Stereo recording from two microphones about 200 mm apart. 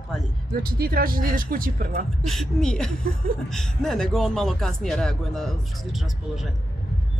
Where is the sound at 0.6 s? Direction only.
50° right (ahead or behind).